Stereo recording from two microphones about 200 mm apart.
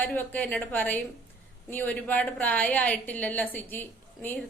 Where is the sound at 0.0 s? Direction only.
10° left (ahead or behind).